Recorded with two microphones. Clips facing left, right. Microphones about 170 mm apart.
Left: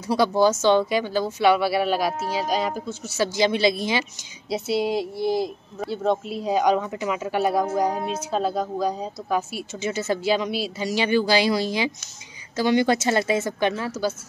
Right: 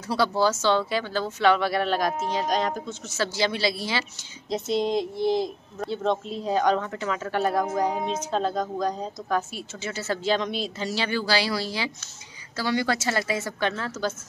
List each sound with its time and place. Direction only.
0.1 s speech: 15° left (ahead or behind)
4.5 s a woman's voice: 10° left (ahead or behind)